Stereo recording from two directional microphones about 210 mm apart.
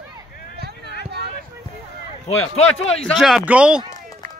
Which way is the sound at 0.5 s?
50° right (ahead or behind).